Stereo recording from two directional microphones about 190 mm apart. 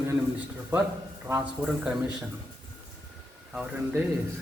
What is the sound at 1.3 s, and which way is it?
Speech, 15° right (ahead or behind).